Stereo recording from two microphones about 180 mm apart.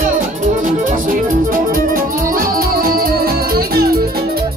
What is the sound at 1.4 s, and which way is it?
Music, 50° right (ahead or behind).